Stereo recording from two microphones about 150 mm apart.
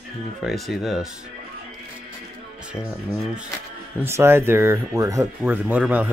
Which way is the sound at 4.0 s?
15° right (ahead or behind).